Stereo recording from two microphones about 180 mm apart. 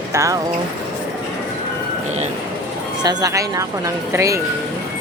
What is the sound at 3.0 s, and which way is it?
Speech, 20° right (ahead or behind).